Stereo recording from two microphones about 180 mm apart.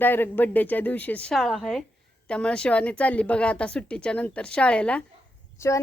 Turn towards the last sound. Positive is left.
turn(degrees=15)  # may be behind; listen again after turning